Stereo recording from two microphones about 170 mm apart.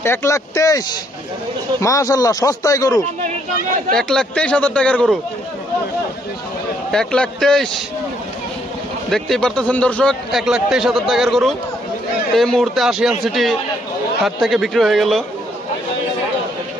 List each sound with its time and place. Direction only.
0.0 s speech: 15° left (ahead or behind)
3.9 s a man's voice: 5° left (ahead or behind)
6.9 s a man's voice: 5° left (ahead or behind)
9.1 s a man's voice: 5° left (ahead or behind)